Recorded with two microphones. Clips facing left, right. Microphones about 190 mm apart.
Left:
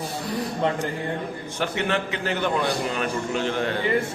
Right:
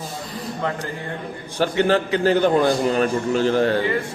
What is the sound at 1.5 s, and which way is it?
A man's voice, 35° right (ahead or behind).